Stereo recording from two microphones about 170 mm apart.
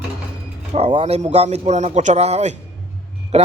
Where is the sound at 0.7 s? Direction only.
35° right (ahead or behind).